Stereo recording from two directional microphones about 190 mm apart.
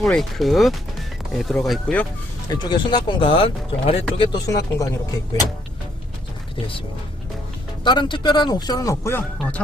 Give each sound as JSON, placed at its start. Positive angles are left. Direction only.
{"t": 0.0, "sound": "speech", "side_deg": 0}
{"t": 2.5, "sound": "speech", "side_deg": 20}
{"t": 7.9, "sound": "speech", "side_deg": 25}